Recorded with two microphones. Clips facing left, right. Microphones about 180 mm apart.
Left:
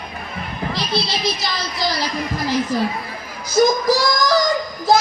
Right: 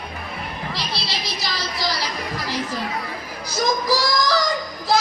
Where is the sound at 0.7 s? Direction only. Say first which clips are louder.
Left 9 dB; 50° left (ahead or behind).